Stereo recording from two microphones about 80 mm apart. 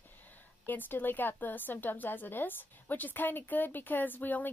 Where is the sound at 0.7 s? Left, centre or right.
Left.